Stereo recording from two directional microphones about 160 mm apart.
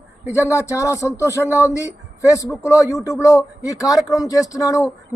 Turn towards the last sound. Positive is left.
turn(degrees=20)  # may be behind; listen again after turning